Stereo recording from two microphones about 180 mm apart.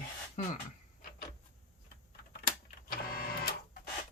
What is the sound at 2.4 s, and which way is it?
Printer, 55° left (ahead or behind).